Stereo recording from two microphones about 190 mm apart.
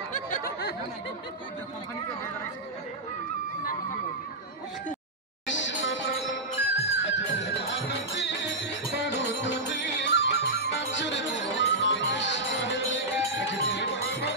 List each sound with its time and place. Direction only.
5.5 s music: 75° left (ahead or behind)